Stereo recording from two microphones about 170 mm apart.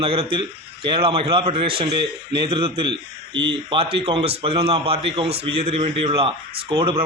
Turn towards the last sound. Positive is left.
turn(degrees=-30)  # may be behind; listen again after turning